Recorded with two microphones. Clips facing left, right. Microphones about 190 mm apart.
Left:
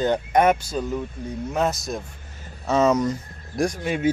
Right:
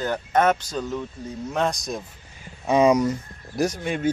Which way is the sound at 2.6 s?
15° right (ahead or behind).